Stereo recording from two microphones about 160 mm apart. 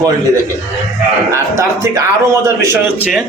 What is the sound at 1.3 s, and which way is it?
A man's voice, 20° right (ahead or behind).